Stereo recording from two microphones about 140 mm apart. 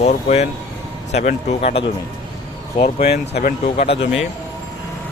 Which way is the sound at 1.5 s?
45° left (ahead or behind).